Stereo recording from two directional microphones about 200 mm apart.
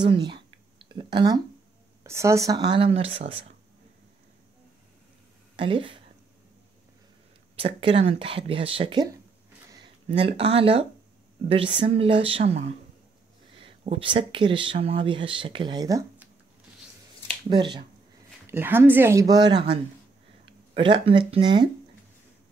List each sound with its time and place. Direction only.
0.0 s a sound: 20° right (ahead or behind)
2.0 s speech: 15° right (ahead or behind)
5.6 s speech: 25° right (ahead or behind)
7.5 s speech: 25° right (ahead or behind)
17.5 s speech: 25° right (ahead or behind)
18.5 s speech: 10° right (ahead or behind)